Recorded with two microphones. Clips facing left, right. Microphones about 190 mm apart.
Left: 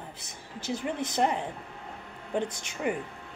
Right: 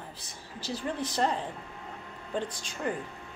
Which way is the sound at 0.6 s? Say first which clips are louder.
Left 2 dB; 20° left (ahead or behind).